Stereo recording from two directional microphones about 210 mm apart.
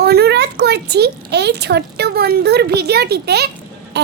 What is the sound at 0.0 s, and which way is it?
A child's voice, 50° right (ahead or behind).